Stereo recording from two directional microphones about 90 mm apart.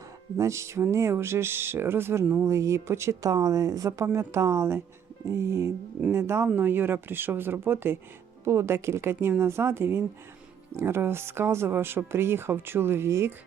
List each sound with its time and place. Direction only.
0.3 s speech: 35° right (ahead or behind)